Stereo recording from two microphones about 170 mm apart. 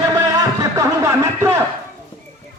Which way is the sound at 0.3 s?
20° right (ahead or behind).